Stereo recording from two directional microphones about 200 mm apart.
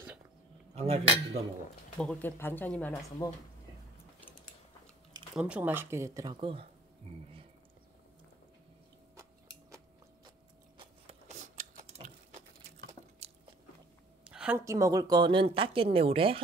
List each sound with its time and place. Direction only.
0.7 s cutlery: 30° right (ahead or behind)
2.0 s speech: 5° left (ahead or behind)
5.3 s speech: 5° right (ahead or behind); by 6.7 s 25° right (ahead or behind)
10.8 s a sound: 30° right (ahead or behind)
14.2 s a sound: 5° right (ahead or behind)
14.6 s speech: 15° right (ahead or behind)